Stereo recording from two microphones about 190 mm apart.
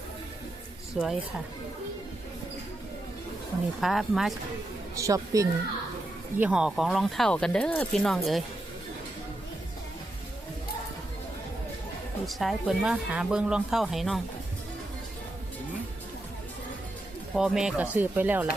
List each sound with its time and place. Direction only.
0.9 s speech: centre (ahead or behind)
3.8 s speech: centre (ahead or behind)
4.9 s speech: 15° right (ahead or behind)
6.4 s speech: 5° right (ahead or behind)
12.2 s speech: centre (ahead or behind)
17.3 s speech: 5° right (ahead or behind)